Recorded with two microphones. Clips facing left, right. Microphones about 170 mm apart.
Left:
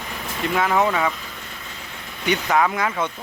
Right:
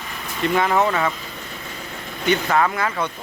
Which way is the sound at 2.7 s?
15° left (ahead or behind).